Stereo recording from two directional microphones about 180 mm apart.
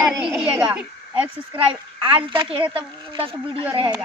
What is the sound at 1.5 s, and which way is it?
A child's voice, 25° right (ahead or behind).